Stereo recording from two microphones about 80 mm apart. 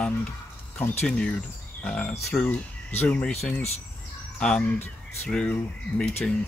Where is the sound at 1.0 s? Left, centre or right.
Centre.